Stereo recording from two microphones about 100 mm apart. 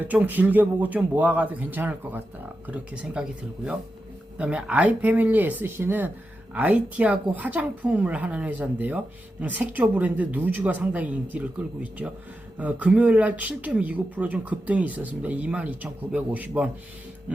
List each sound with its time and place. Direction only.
0.0 s speech: 15° right (ahead or behind)